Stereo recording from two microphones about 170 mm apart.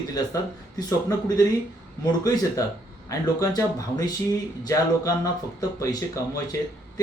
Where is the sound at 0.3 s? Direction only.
20° left (ahead or behind).